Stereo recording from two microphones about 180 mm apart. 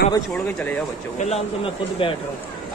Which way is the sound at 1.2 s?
35° left (ahead or behind).